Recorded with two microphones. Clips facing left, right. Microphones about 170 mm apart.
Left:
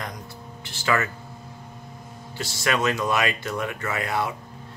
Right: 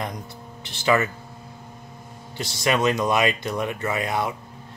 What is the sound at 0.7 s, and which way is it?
Speech, 20° right (ahead or behind).